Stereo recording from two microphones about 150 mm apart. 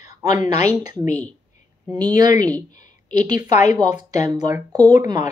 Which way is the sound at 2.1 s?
25° right (ahead or behind).